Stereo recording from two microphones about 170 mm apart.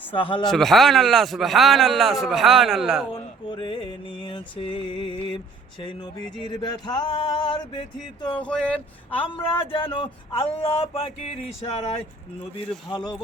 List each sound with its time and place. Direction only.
0.1 s speech: 30° left (ahead or behind)
0.5 s speech: centre (ahead or behind)
3.1 s mantra: 30° left (ahead or behind)
8.4 s speech: 5° left (ahead or behind)
9.2 s speech: 30° left (ahead or behind)